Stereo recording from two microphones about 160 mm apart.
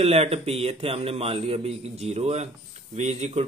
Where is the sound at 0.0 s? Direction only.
40° right (ahead or behind).